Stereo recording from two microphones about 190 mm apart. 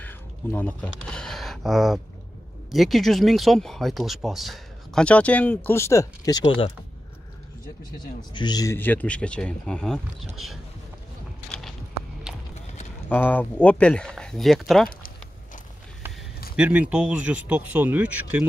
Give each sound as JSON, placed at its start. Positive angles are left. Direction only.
{"t": 0.0, "sound": "a sound", "side_deg": 10}
{"t": 2.7, "sound": "speech", "side_deg": 0}
{"t": 8.2, "sound": "speech", "side_deg": 25}
{"t": 12.3, "sound": "clip-clop", "side_deg": 0}
{"t": 13.1, "sound": "speech", "side_deg": 10}
{"t": 14.9, "sound": "a sound", "side_deg": 50}
{"t": 16.5, "sound": "speech", "side_deg": -5}